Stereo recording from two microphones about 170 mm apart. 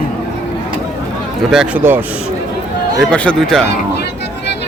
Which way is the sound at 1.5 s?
5° right (ahead or behind).